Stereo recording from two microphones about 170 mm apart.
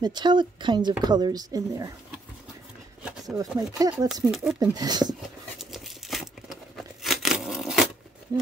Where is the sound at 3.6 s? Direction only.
20° right (ahead or behind).